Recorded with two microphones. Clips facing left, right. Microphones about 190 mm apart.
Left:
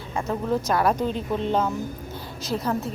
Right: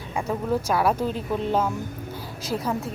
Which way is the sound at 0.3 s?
5° right (ahead or behind).